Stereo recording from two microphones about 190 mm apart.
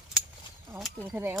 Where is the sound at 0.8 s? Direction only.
Centre (ahead or behind).